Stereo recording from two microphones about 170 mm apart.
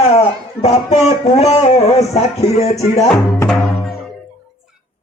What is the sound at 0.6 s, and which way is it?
Music, 40° left (ahead or behind).